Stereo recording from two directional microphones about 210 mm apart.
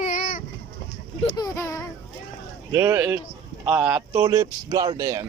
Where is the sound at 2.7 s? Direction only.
10° right (ahead or behind).